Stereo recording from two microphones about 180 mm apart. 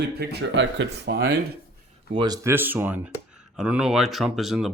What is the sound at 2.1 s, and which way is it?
Speech, 20° right (ahead or behind).